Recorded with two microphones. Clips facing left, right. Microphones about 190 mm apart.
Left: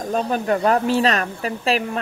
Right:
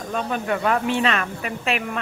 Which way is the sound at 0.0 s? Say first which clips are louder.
Left 4 dB; 35° left (ahead or behind).